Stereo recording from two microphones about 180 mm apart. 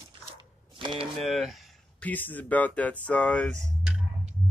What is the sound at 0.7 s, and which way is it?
Speech, 30° right (ahead or behind).